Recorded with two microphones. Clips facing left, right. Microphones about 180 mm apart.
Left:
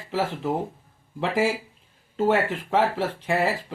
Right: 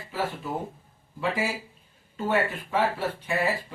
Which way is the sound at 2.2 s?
90° left.